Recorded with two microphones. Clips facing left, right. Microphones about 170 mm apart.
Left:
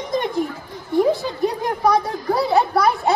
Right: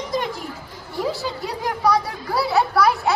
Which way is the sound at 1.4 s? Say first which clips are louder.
Left 3 dB; 20° left (ahead or behind).